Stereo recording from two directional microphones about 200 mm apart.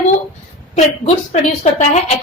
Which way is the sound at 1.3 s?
35° left (ahead or behind).